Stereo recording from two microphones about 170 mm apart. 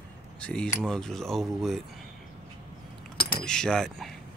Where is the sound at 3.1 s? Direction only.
65° left (ahead or behind).